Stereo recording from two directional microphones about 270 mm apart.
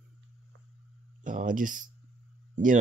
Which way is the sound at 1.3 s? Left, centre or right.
Right.